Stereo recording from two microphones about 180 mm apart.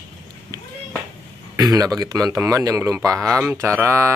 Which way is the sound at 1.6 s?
20° right (ahead or behind).